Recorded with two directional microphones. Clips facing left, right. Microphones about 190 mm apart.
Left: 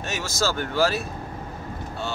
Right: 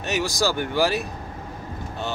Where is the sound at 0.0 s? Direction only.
15° right (ahead or behind).